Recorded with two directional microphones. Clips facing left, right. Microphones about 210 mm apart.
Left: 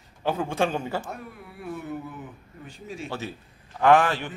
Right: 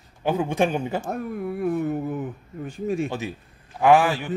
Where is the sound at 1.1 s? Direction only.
50° right (ahead or behind).